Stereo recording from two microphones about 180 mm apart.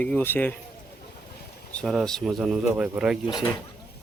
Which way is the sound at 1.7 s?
Centre (ahead or behind).